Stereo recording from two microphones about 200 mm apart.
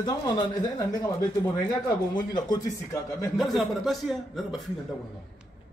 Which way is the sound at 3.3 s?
Centre (ahead or behind).